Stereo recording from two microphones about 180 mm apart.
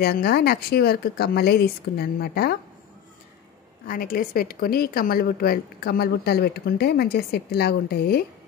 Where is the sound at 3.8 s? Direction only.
50° left (ahead or behind).